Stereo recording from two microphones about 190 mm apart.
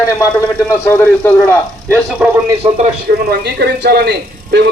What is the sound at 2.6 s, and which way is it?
Speech, 30° right (ahead or behind).